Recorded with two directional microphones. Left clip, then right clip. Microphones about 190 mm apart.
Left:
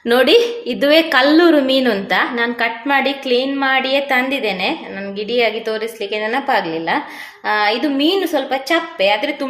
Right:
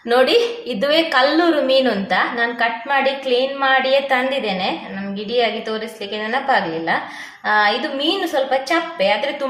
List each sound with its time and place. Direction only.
0.1 s a woman's voice: 30° left (ahead or behind)